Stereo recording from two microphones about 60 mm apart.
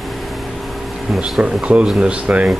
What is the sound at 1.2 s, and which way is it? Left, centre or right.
Speech, centre.